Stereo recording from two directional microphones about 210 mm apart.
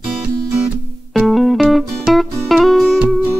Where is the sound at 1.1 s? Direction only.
Centre (ahead or behind).